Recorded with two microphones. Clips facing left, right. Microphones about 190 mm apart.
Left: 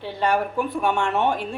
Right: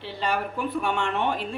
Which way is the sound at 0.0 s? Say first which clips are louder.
Left 5 dB; 50° left (ahead or behind).